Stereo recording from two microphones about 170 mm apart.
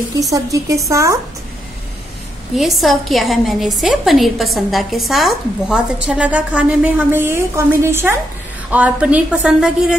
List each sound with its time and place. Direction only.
0.3 s a woman's voice: 20° right (ahead or behind)
2.5 s a woman's voice: centre (ahead or behind)